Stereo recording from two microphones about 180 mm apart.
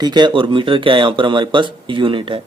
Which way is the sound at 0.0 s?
25° right (ahead or behind).